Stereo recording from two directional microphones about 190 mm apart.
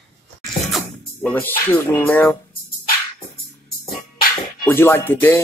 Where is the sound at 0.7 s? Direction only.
5° left (ahead or behind).